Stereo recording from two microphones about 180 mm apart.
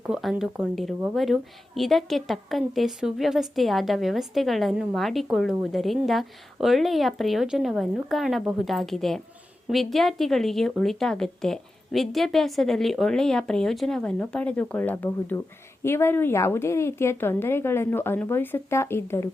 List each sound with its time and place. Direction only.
0.0 s a woman's voice: centre (ahead or behind)